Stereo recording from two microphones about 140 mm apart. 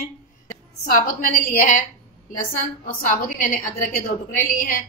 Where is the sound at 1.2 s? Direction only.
75° left (ahead or behind).